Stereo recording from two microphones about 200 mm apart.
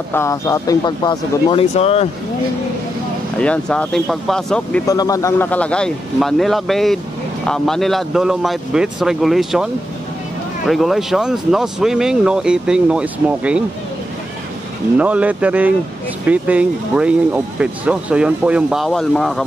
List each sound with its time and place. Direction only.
0.1 s speech: 15° left (ahead or behind); by 2.0 s 30° left (ahead or behind)
3.3 s speech: 5° left (ahead or behind)
4.8 s speech: 20° left (ahead or behind); by 9.7 s centre (ahead or behind)
10.7 s speech: centre (ahead or behind)
15.0 s speech: 5° right (ahead or behind)